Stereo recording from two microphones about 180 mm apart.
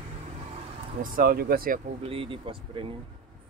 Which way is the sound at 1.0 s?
50° right (ahead or behind).